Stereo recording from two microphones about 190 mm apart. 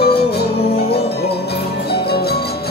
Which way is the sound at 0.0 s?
55° left (ahead or behind).